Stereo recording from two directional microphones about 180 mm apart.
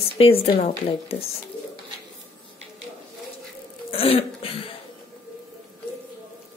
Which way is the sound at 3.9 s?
30° left (ahead or behind).